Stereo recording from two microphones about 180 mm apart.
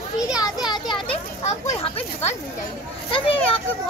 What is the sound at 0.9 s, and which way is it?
A child's voice, 35° left (ahead or behind).